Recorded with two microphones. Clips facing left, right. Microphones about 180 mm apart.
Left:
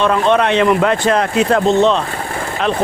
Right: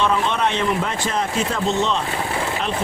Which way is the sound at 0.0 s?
65° left (ahead or behind).